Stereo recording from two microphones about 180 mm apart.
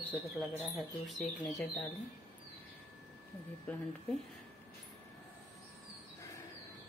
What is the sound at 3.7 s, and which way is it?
Speech, 5° left (ahead or behind).